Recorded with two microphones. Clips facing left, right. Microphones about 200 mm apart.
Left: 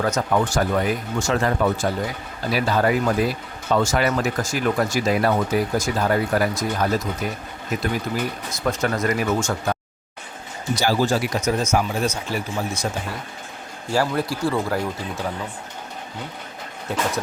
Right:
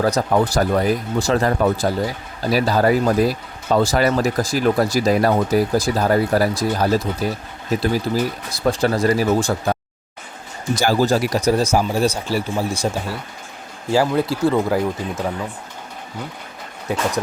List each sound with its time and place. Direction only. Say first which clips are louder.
0.0 s speech: right 4 dB; 35° right (ahead or behind)
10.8 s speech: right 3 dB; 45° right (ahead or behind)
13.9 s speech: right 4 dB; 25° right (ahead or behind)